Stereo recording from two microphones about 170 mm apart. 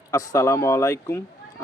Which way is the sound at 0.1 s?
20° left (ahead or behind).